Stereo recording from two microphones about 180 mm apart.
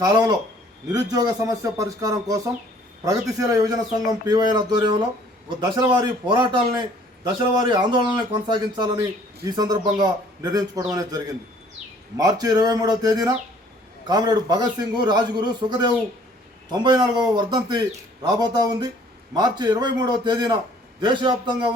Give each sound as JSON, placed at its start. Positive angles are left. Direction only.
{"t": 0.0, "sound": "a man's voice", "side_deg": -25}